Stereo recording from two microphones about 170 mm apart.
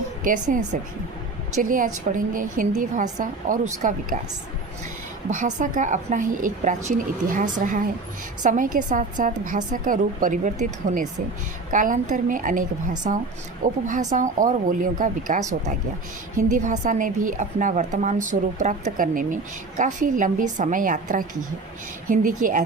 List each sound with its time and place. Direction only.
0.3 s a woman's voice: 50° right (ahead or behind)
5.3 s a woman's voice: 50° right (ahead or behind)